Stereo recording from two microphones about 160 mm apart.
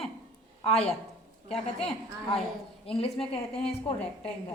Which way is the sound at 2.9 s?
35° left (ahead or behind).